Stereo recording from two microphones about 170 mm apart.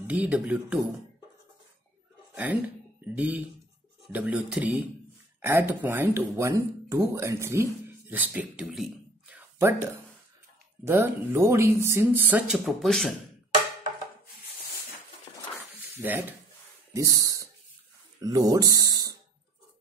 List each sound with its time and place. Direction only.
0.0 s speech: 10° right (ahead or behind)
2.3 s speech: 10° right (ahead or behind)
10.9 s speech: 15° right (ahead or behind); by 13.1 s centre (ahead or behind)
16.0 s speech: 10° right (ahead or behind)